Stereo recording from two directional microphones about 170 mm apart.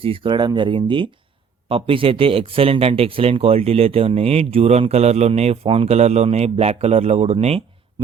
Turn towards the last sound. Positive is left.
turn(degrees=-35)  # may be behind; listen again after turning